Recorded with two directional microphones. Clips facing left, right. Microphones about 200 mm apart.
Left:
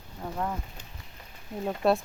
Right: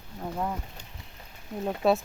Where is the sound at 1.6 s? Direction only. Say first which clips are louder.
Right 1 dB; centre (ahead or behind).